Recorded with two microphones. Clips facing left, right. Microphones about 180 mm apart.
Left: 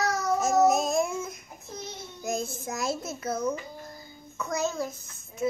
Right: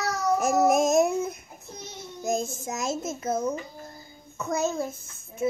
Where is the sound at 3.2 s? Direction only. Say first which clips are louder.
Right 1 dB; 25° right (ahead or behind).